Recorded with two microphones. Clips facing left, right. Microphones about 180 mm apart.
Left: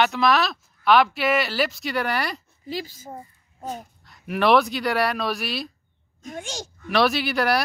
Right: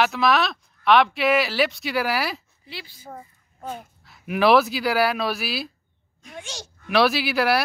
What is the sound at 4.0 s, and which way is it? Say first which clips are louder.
Speech: right 2 dB; centre (ahead or behind).